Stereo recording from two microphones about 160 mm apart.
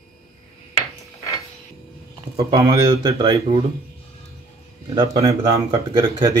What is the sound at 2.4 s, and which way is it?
Speech, 20° right (ahead or behind).